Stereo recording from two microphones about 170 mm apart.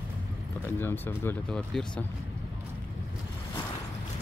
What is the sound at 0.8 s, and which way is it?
Speech, 10° left (ahead or behind).